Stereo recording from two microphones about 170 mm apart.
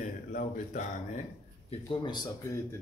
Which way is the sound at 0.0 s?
50° left (ahead or behind).